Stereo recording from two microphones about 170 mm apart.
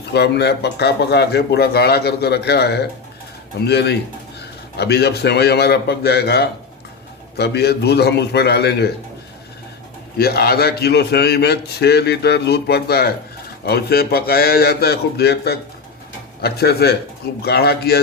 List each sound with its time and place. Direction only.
0.0 s a man's voice: 75° left (ahead or behind)
10.2 s a man's voice: 65° left (ahead or behind)